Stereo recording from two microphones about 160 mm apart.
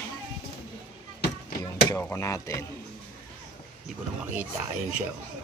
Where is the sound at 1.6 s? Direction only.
25° left (ahead or behind).